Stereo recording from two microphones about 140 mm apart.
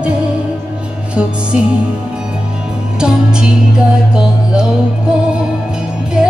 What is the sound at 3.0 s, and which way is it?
Music, 5° right (ahead or behind).